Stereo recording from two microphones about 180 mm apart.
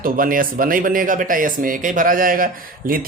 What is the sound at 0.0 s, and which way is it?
Speech, 50° right (ahead or behind).